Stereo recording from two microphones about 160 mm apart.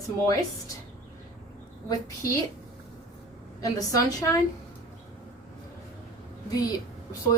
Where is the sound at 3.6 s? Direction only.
20° left (ahead or behind).